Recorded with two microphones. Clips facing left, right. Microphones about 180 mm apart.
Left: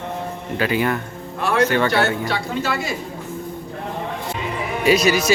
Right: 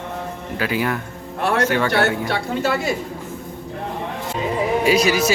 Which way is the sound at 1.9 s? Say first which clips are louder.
Right 1 dB; 60° right (ahead or behind).